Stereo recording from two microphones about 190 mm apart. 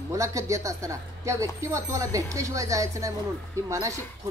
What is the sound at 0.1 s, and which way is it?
Speech, 15° right (ahead or behind).